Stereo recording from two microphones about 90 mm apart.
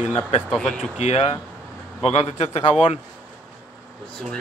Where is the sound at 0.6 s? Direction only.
10° left (ahead or behind).